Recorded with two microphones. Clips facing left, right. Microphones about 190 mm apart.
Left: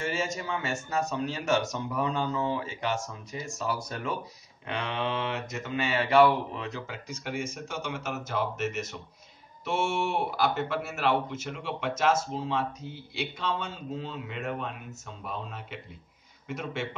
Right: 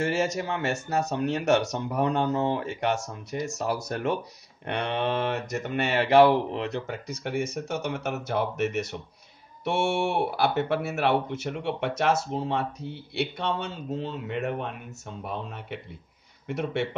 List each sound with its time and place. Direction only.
0.1 s speech: 65° right (ahead or behind)